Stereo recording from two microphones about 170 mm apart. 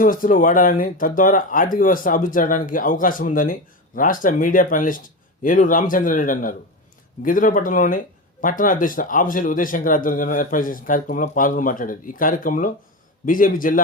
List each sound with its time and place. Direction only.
0.0 s speech: 55° left (ahead or behind)